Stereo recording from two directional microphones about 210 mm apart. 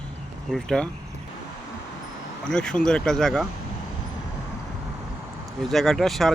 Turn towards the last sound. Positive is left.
turn(degrees=0)  # may be behind; listen again after turning